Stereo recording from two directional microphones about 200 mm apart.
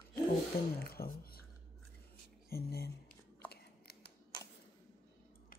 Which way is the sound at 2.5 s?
50° left (ahead or behind).